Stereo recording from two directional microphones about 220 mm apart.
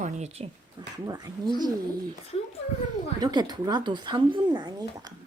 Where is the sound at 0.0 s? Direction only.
30° right (ahead or behind).